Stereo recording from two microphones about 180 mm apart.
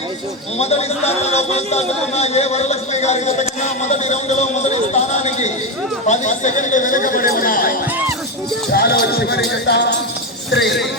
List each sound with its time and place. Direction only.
0.6 s a man's voice: 35° left (ahead or behind)
8.7 s music: 60° left (ahead or behind)
10.5 s speech: 65° left (ahead or behind)